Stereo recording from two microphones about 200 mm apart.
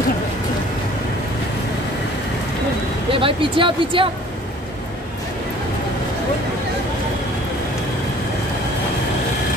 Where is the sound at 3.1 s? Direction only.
25° right (ahead or behind).